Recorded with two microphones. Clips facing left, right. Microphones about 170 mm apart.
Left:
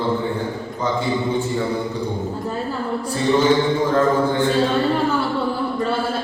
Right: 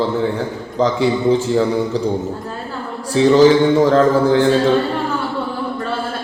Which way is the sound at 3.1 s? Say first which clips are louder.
Right 7 dB; 90° right.